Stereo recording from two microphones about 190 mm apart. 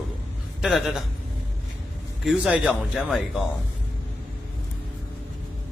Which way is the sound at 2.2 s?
Centre (ahead or behind).